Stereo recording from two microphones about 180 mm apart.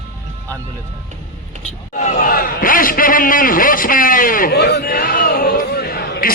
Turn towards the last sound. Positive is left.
turn(degrees=60)  # may be behind; listen again after turning